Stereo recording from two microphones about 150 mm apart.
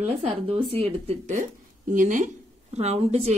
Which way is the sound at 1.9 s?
60° right (ahead or behind).